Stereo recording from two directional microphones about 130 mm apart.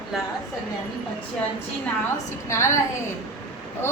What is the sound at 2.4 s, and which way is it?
Speech, 20° left (ahead or behind).